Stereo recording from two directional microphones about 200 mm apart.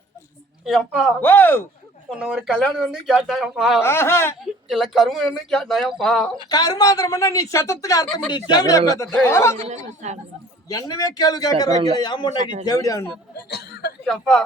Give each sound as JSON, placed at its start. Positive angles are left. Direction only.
{"t": 0.6, "sound": "speech", "side_deg": 0}
{"t": 1.2, "sound": "a woman's voice", "side_deg": 10}
{"t": 2.0, "sound": "speech", "side_deg": -5}
{"t": 3.8, "sound": "a woman's voice", "side_deg": 10}
{"t": 4.4, "sound": "speech", "side_deg": 0}
{"t": 6.5, "sound": "a woman's voice", "side_deg": 20}
{"t": 8.0, "sound": "speech", "side_deg": 5}
{"t": 8.3, "sound": "a woman's voice", "side_deg": 20}
{"t": 9.6, "sound": "a woman's voice", "side_deg": -35}
{"t": 10.7, "sound": "a woman's voice", "side_deg": 15}
{"t": 13.3, "sound": "speech", "side_deg": 55}
{"t": 14.0, "sound": "speech", "side_deg": 0}